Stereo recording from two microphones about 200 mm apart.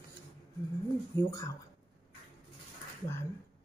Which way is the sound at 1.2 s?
15° left (ahead or behind).